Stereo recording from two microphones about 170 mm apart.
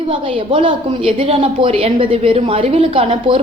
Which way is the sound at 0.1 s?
30° right (ahead or behind).